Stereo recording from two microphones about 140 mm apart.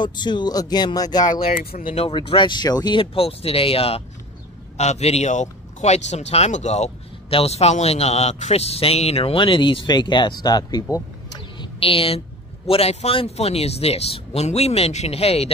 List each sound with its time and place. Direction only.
0.0 s speech: 30° left (ahead or behind)
1.2 s speech: 80° left
2.0 s speech: 35° left (ahead or behind)